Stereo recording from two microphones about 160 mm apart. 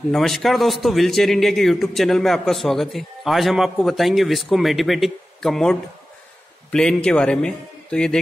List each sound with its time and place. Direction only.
0.1 s a man's voice: centre (ahead or behind)